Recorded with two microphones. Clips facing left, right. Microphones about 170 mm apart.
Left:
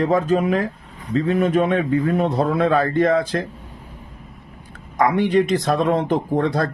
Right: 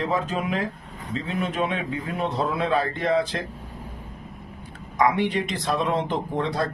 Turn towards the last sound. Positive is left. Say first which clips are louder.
# left 6 dB
turn(degrees=45)  # may be behind; listen again after turning